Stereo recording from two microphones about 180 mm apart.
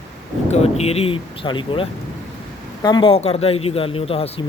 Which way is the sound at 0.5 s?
35° left (ahead or behind).